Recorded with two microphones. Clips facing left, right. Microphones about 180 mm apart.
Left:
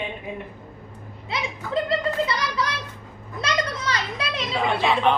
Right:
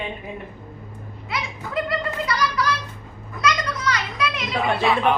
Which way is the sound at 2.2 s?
25° left (ahead or behind).